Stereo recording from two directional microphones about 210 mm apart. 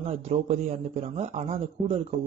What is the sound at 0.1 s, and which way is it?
A man's voice, 30° right (ahead or behind).